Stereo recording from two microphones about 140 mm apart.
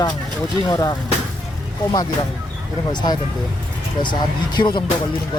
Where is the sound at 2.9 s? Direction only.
30° left (ahead or behind).